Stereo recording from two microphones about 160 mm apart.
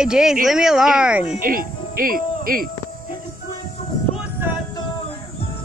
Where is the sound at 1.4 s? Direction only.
60° right (ahead or behind).